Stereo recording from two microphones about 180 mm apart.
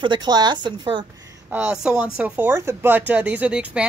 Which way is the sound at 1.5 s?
10° right (ahead or behind).